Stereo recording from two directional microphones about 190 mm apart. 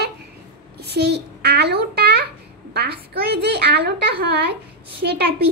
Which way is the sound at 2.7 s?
60° right (ahead or behind).